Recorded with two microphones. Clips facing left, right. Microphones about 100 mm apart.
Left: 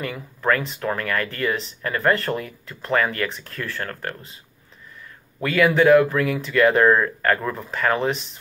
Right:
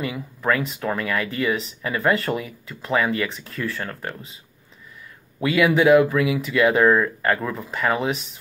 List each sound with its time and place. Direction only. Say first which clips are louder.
0.0 s speech: even; 5° right (ahead or behind)
5.4 s speech: even; 5° right (ahead or behind)